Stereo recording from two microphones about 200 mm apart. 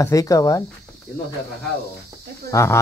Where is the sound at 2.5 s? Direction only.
15° left (ahead or behind).